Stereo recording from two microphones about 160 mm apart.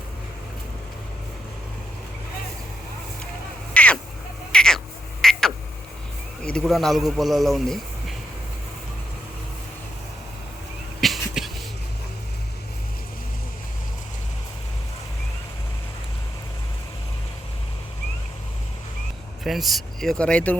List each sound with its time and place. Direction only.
3.8 s crow: 10° left (ahead or behind)
4.5 s owl: 5° left (ahead or behind)
5.2 s frog: 5° left (ahead or behind)
6.4 s a man's voice: 5° left (ahead or behind)
11.0 s a sound: centre (ahead or behind)
19.5 s speech: centre (ahead or behind)